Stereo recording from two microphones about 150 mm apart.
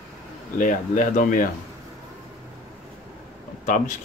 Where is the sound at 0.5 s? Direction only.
60° left (ahead or behind).